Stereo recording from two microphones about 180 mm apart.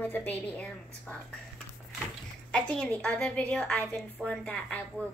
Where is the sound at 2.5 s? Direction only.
5° left (ahead or behind).